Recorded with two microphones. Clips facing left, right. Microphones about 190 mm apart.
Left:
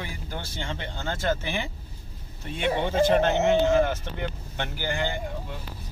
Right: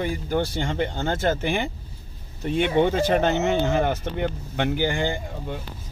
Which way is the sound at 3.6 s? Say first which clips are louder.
Left 1 dB; 60° right (ahead or behind).